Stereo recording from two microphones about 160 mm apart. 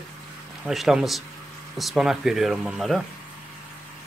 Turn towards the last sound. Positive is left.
turn(degrees=0)  # may be behind; listen again after turning